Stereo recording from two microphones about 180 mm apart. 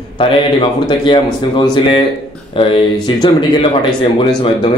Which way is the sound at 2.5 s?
30° left (ahead or behind).